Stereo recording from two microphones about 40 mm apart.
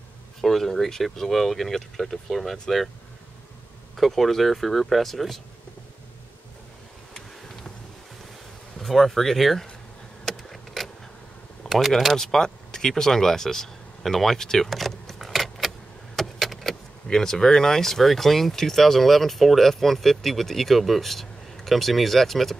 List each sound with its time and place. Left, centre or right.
0.4 s speech: centre
3.9 s speech: centre
8.7 s speech: centre
10.2 s a sound: centre
11.6 s a sound: left
12.2 s speech: centre
16.2 s vehicle: centre
17.1 s speech: centre